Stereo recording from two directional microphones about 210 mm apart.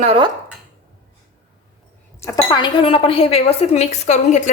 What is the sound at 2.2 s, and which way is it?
A woman's voice, 20° left (ahead or behind).